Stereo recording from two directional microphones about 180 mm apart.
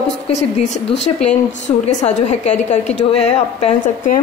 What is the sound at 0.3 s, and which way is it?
A woman's voice, 40° left (ahead or behind).